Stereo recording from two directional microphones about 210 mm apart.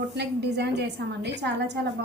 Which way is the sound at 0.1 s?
55° right (ahead or behind).